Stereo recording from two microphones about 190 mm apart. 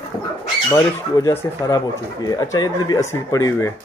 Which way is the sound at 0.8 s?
20° left (ahead or behind).